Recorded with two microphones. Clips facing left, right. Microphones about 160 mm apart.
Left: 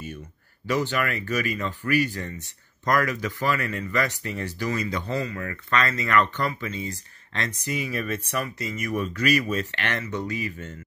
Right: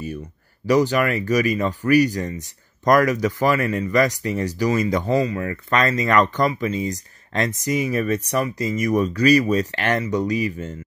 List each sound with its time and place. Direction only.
0.7 s speech: 40° right (ahead or behind)
5.3 s speech: 30° right (ahead or behind)